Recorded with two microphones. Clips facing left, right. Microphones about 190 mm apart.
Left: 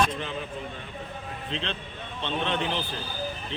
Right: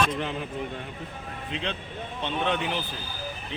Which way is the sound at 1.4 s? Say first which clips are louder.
Right 1 dB; 10° right (ahead or behind).